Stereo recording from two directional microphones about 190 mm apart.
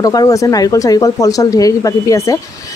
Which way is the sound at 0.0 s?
20° left (ahead or behind).